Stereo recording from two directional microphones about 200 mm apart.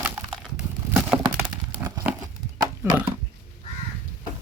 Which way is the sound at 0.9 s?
10° right (ahead or behind).